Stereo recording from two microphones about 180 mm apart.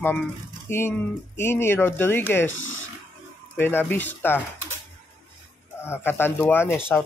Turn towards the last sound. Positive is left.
turn(degrees=10)  # may be behind; listen again after turning